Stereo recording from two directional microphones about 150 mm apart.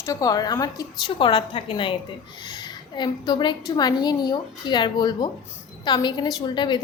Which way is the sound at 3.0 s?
30° left (ahead or behind).